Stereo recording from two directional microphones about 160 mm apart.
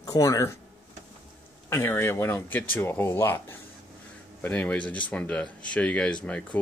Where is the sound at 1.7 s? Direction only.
15° left (ahead or behind).